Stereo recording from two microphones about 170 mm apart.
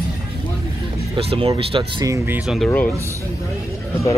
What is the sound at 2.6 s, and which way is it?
Speech, 10° left (ahead or behind).